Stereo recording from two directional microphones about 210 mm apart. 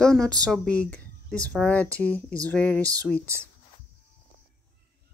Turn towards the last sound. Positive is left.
turn(degrees=5)  # may be behind; listen again after turning